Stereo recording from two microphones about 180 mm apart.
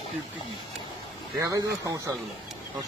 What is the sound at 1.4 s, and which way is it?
Speech, 20° right (ahead or behind).